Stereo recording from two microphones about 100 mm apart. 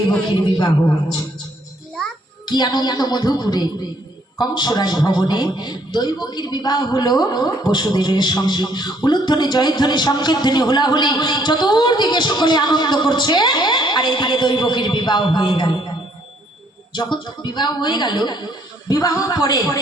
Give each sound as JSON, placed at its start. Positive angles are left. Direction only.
{"t": 2.5, "sound": "a woman's voice", "side_deg": 45}
{"t": 16.9, "sound": "a woman's voice", "side_deg": 45}